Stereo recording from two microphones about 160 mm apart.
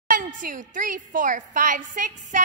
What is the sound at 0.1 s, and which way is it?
A woman's voice, 55° right (ahead or behind).